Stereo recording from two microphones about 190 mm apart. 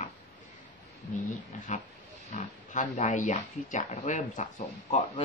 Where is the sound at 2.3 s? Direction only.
40° left (ahead or behind).